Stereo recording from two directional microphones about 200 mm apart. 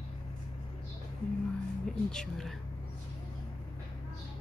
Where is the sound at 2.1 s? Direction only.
5° left (ahead or behind).